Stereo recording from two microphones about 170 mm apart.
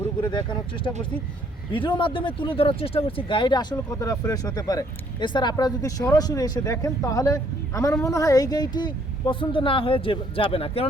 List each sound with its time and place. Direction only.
0.2 s speech: 25° left (ahead or behind)
1.7 s speech: 30° left (ahead or behind)